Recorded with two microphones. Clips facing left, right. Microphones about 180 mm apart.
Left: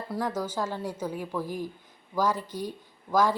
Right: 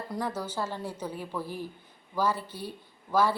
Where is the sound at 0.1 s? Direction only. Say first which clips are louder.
Left 4 dB; 10° left (ahead or behind).